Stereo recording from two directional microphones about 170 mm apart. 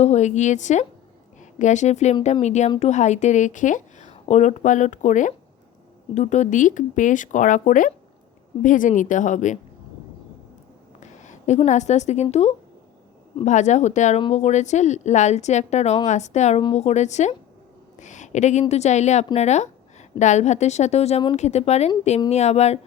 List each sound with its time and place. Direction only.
0.0 s speech: 40° left (ahead or behind)
11.0 s a woman's voice: 45° left (ahead or behind)